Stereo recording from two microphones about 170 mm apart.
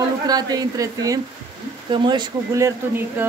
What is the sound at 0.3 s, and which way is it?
Speech, 25° right (ahead or behind).